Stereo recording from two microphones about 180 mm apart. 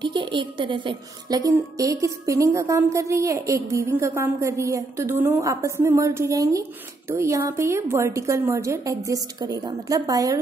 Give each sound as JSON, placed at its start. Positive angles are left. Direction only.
{"t": 0.0, "sound": "a woman's voice", "side_deg": -25}